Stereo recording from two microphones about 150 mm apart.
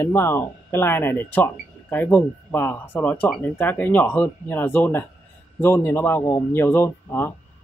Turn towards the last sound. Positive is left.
turn(degrees=15)  # may be behind; listen again after turning